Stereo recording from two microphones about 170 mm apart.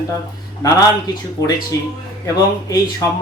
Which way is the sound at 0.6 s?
20° left (ahead or behind).